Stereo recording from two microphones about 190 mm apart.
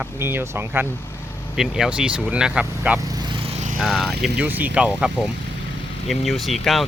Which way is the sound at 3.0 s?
20° right (ahead or behind).